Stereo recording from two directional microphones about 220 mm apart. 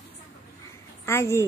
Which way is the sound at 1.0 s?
10° left (ahead or behind).